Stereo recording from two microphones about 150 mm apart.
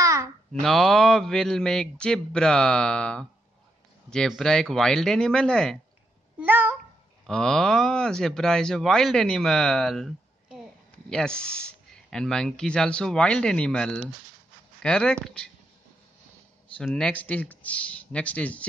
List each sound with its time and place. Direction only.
0.0 s babbling: 20° right (ahead or behind)
0.5 s speech: 5° left (ahead or behind)
6.4 s a sound: 10° right (ahead or behind)
7.2 s speech: 5° left (ahead or behind)
16.7 s speech: 5° left (ahead or behind)